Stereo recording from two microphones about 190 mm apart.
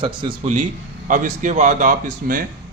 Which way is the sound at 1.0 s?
45° right (ahead or behind).